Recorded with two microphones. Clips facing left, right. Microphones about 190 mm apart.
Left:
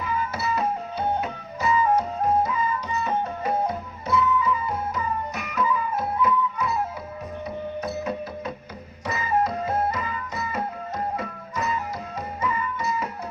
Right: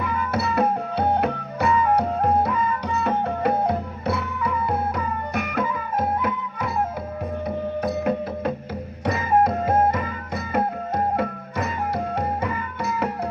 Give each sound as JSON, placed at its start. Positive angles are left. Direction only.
{"t": 0.0, "sound": "music", "side_deg": -60}
{"t": 9.0, "sound": "music", "side_deg": -55}